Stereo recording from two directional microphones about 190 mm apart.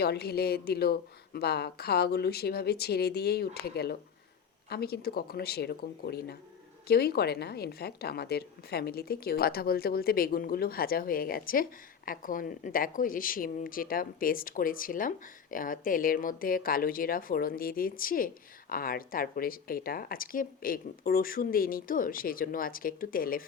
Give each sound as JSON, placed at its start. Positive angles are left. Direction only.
{"t": 0.0, "sound": "a woman's voice", "side_deg": 55}